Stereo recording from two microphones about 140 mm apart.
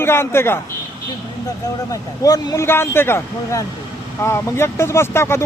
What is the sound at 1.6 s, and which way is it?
Speech, 25° left (ahead or behind).